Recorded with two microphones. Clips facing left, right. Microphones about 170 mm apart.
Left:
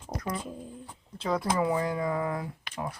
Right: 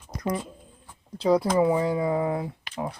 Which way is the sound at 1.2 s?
30° right (ahead or behind).